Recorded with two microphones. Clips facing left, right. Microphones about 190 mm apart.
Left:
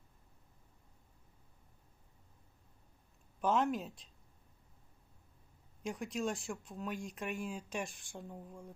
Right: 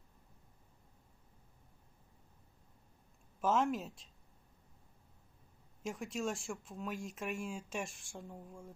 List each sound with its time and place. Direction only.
3.4 s speech: centre (ahead or behind)
5.8 s speech: centre (ahead or behind)